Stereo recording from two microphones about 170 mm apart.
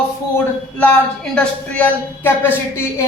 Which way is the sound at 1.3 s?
10° left (ahead or behind).